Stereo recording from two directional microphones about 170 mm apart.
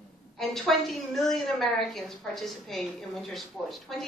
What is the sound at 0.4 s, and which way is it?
A woman's voice, centre (ahead or behind).